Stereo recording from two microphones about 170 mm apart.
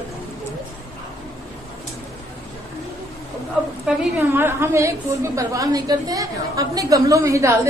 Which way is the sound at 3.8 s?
15° right (ahead or behind).